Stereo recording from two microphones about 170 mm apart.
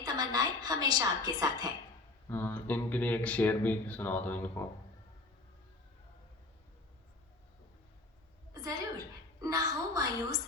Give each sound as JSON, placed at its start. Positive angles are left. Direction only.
{"t": 0.0, "sound": "a woman's voice", "side_deg": -25}
{"t": 2.3, "sound": "speech", "side_deg": 10}
{"t": 8.5, "sound": "a woman's voice", "side_deg": -20}